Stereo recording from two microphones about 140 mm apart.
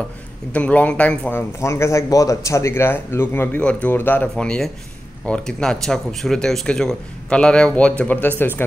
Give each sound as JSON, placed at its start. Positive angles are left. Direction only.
{"t": 0.5, "sound": "speech", "side_deg": 10}
{"t": 1.6, "sound": "speech", "side_deg": 20}